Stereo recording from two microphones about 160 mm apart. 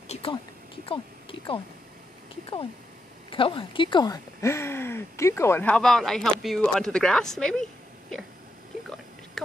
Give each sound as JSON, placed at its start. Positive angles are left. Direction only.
{"t": 0.1, "sound": "a sound", "side_deg": 35}
{"t": 0.8, "sound": "speech", "side_deg": 35}
{"t": 3.3, "sound": "speech", "side_deg": 35}